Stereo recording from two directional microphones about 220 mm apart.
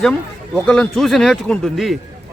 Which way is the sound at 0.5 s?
5° left (ahead or behind).